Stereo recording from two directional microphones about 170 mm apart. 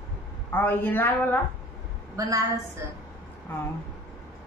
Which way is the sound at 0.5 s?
10° left (ahead or behind).